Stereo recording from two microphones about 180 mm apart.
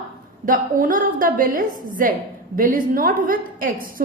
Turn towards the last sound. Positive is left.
turn(degrees=-50)  # may be behind; listen again after turning